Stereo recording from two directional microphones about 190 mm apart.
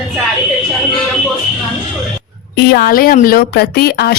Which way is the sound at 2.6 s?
55° left (ahead or behind).